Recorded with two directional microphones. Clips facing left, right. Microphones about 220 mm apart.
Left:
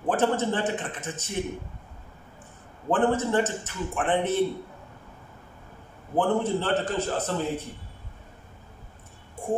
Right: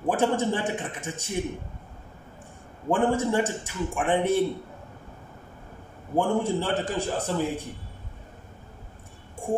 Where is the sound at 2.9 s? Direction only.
10° right (ahead or behind).